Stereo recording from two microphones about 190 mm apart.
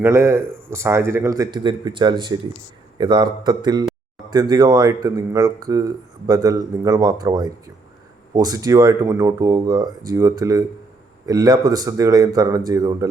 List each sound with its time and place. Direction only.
0.0 s speech: 15° right (ahead or behind)